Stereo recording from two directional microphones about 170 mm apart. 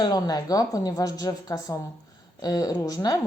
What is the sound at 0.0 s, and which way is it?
A woman's voice, 20° left (ahead or behind).